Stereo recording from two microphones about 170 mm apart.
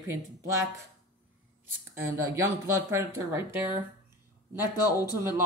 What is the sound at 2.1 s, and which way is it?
Speech, 15° right (ahead or behind).